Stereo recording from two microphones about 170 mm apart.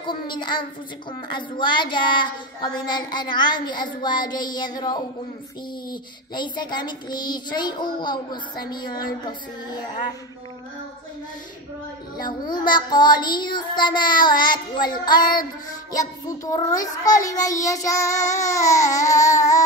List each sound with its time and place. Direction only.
0.0 s child singing: 30° left (ahead or behind)
12.3 s child singing: 25° left (ahead or behind)